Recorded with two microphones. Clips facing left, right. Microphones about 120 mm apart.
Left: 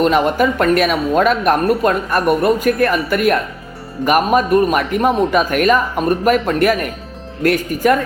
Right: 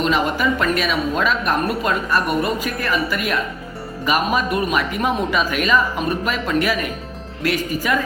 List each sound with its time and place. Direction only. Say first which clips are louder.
0.0 s speech: left 5 dB; 50° left (ahead or behind)